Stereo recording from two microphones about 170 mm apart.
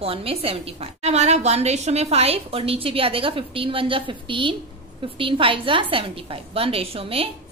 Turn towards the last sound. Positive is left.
turn(degrees=-35)  # may be behind; listen again after turning